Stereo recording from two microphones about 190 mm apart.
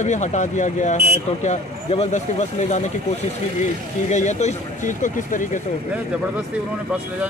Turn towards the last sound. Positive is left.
turn(degrees=40)  # may be behind; listen again after turning